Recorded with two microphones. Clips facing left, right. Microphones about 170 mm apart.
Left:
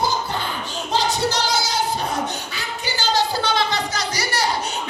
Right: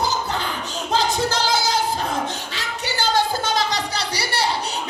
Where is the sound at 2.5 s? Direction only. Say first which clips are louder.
Right 1 dB; 65° right (ahead or behind).